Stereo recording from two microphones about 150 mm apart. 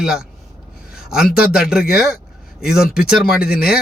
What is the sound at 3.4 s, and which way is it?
Speech, 90° left.